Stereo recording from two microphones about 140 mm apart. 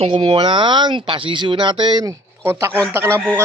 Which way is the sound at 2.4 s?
20° right (ahead or behind).